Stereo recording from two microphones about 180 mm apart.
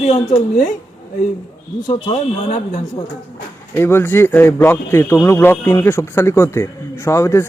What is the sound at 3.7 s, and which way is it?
A man's voice, 10° left (ahead or behind).